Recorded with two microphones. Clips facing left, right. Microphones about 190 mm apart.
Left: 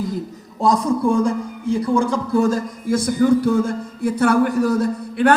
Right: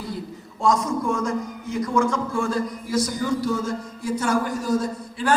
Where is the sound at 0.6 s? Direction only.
35° left (ahead or behind).